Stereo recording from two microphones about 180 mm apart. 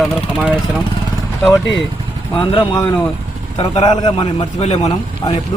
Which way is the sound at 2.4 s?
30° left (ahead or behind).